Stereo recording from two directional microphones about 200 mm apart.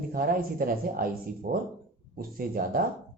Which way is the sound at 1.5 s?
60° right (ahead or behind).